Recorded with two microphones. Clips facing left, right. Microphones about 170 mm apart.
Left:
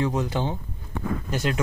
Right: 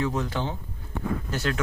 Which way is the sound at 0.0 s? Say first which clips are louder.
Left 2 dB; 15° left (ahead or behind).